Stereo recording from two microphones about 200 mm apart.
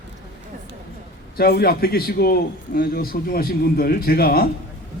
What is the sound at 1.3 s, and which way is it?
A man's voice, 50° left (ahead or behind).